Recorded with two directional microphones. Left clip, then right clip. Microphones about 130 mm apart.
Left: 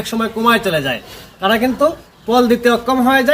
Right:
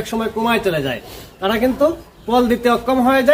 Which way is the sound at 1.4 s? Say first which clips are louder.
Left 2 dB; 40° left (ahead or behind).